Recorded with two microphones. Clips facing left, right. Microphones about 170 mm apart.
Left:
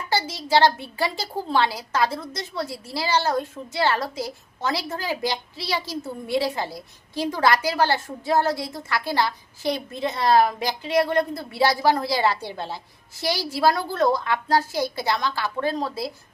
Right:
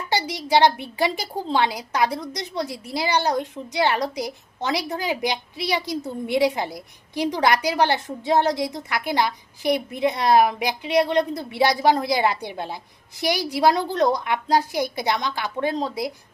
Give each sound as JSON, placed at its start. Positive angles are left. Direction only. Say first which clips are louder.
{"t": 0.1, "sound": "a woman's voice", "louder": "right 1 dB", "side_deg": -15}